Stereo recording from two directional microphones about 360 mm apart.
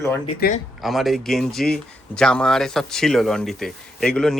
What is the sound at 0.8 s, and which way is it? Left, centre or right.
Speech, centre.